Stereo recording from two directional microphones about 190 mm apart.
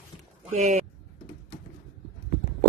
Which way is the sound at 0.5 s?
35° right (ahead or behind).